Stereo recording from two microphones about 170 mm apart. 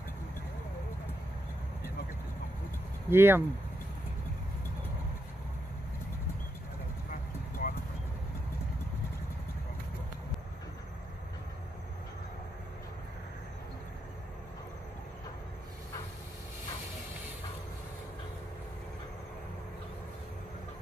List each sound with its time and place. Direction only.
3.1 s speech: 15° right (ahead or behind)
7.6 s vehicle: 60° left (ahead or behind)